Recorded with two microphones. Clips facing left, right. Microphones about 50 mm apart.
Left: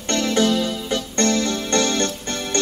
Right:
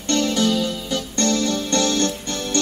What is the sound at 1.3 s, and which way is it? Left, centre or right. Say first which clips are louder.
Music: even; centre.